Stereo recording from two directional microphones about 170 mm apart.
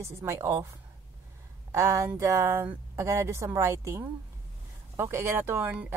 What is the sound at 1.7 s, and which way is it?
Speech, 15° right (ahead or behind).